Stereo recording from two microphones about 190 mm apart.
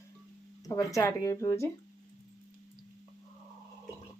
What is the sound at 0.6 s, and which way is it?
Speech, 15° left (ahead or behind).